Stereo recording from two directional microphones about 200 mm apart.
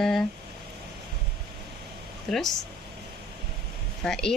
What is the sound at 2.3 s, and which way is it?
Speech, centre (ahead or behind).